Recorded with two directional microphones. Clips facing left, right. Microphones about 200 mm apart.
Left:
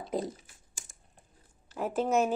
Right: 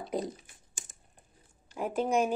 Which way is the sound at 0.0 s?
Centre (ahead or behind).